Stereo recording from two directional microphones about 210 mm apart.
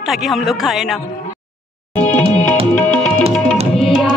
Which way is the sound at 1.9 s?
10° left (ahead or behind).